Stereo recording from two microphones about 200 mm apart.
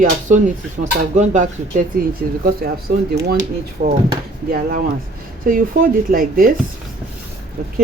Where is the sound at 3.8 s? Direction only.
45° right (ahead or behind).